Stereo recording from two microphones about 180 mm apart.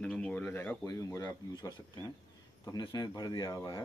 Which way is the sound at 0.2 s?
10° left (ahead or behind).